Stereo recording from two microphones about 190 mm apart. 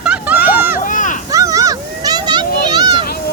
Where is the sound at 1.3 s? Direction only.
15° right (ahead or behind).